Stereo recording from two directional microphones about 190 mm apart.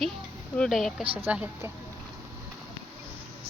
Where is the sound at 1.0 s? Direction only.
30° right (ahead or behind).